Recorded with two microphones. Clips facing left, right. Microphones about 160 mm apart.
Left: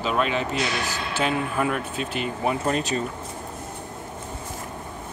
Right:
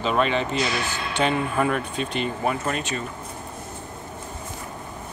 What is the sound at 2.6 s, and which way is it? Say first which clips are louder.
Speech: left 3 dB; 35° left (ahead or behind).